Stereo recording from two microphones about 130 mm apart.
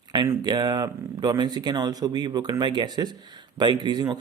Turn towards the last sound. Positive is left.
turn(degrees=-30)  # may be behind; listen again after turning